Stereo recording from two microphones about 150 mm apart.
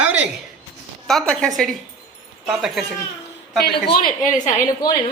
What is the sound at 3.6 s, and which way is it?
Speech, 90° left.